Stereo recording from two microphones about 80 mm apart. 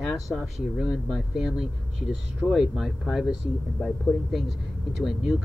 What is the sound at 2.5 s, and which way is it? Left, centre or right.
Speech, centre.